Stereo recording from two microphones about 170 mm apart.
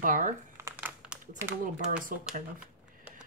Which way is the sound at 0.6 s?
10° right (ahead or behind).